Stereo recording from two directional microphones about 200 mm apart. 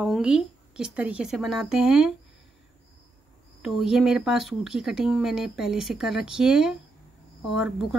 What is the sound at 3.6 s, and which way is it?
Speech, centre (ahead or behind).